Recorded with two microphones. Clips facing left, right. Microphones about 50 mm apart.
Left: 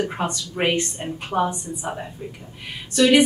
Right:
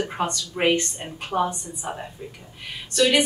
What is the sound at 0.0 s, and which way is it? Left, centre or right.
Speech, centre.